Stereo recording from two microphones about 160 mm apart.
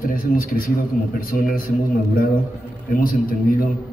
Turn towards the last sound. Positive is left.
turn(degrees=65)  # may be behind; listen again after turning